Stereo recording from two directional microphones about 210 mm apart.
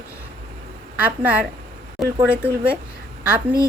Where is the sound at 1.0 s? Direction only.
5° right (ahead or behind).